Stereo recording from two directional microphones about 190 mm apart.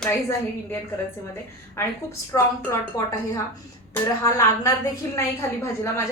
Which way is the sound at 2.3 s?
15° left (ahead or behind).